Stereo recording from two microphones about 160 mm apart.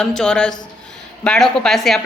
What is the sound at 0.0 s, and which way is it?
A woman's voice, 5° left (ahead or behind).